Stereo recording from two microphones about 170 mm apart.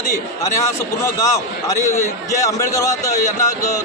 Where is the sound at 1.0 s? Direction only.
20° left (ahead or behind).